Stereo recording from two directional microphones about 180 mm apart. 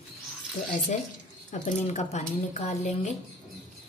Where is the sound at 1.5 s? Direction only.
40° left (ahead or behind).